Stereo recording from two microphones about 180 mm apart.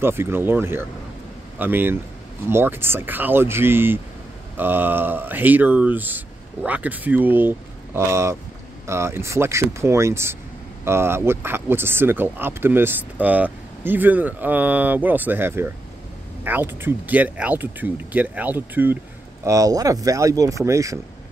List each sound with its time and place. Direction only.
0.0 s speech: 15° right (ahead or behind)